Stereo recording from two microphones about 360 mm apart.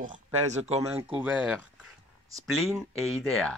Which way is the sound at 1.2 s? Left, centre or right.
Centre.